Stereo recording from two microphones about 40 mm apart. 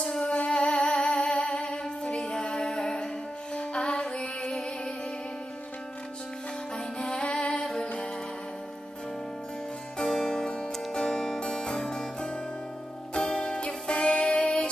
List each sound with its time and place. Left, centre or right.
0.2 s music: left
7.0 s music: left
9.9 s music: centre